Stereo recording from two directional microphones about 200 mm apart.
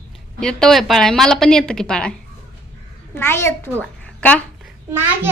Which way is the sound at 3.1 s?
10° left (ahead or behind).